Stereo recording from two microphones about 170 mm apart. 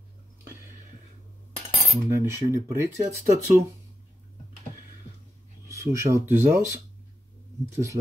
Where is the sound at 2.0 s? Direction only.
15° right (ahead or behind).